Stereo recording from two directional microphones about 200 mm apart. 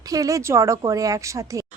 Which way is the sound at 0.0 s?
15° right (ahead or behind).